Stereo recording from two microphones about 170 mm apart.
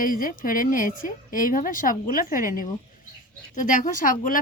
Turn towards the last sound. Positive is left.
turn(degrees=50)  # may be behind; listen again after turning